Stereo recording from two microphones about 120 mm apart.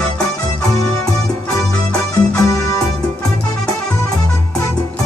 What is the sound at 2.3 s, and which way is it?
Music, 25° left (ahead or behind).